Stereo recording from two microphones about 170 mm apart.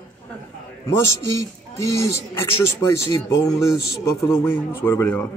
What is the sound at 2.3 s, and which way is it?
Speech, 15° left (ahead or behind).